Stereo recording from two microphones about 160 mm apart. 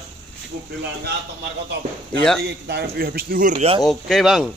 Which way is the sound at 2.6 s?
80° right.